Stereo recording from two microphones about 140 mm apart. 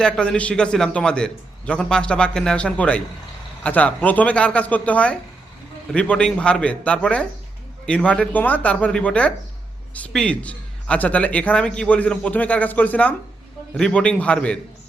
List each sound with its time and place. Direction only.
0.0 s a man's voice: 5° left (ahead or behind)